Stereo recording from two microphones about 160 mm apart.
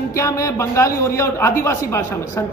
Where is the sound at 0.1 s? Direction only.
20° left (ahead or behind).